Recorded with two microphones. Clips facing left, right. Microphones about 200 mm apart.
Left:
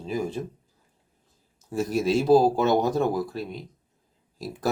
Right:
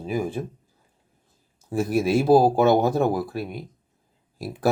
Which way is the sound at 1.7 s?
55° right (ahead or behind).